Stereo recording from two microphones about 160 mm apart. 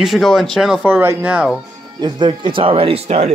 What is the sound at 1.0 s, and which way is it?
Speech, 15° right (ahead or behind).